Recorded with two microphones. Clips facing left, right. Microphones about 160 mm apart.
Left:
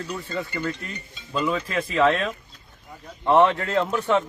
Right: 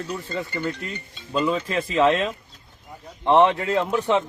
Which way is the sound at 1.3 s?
25° right (ahead or behind).